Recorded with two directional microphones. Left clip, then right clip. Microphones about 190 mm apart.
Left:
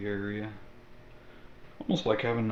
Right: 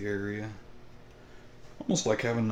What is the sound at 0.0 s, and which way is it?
Speech, 25° right (ahead or behind).